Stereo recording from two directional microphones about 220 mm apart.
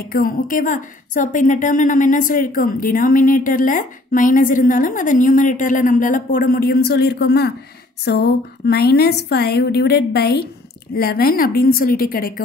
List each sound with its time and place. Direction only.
0.0 s a woman's voice: 40° left (ahead or behind)